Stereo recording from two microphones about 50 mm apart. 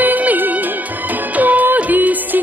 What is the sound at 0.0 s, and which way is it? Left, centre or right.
Music, right.